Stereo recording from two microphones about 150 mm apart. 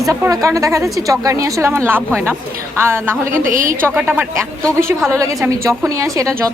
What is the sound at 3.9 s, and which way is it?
A woman's voice, 10° right (ahead or behind).